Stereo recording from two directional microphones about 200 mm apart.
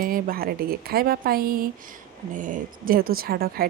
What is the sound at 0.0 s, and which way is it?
Speech, 45° right (ahead or behind).